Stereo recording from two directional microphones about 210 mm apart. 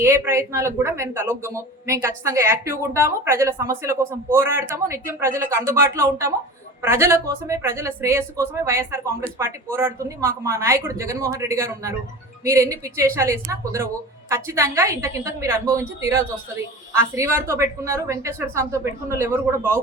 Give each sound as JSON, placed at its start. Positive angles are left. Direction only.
{"t": 0.0, "sound": "speech", "side_deg": -10}